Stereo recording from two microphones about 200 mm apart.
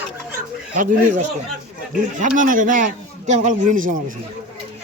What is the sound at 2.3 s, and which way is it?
A man's voice, 40° right (ahead or behind).